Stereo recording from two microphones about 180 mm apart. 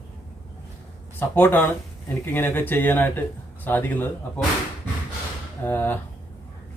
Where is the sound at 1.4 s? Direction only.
10° left (ahead or behind).